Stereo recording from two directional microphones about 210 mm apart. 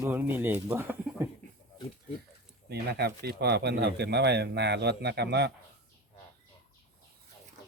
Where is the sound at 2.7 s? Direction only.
50° right (ahead or behind).